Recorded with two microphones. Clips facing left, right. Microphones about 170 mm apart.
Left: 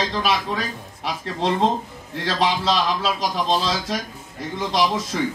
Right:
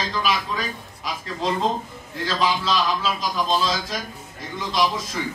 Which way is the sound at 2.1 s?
70° left (ahead or behind).